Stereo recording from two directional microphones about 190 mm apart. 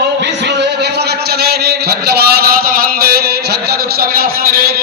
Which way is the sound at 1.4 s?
60° right (ahead or behind).